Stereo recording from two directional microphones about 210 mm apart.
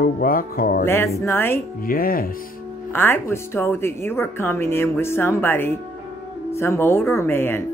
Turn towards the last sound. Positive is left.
turn(degrees=10)  # may be behind; listen again after turning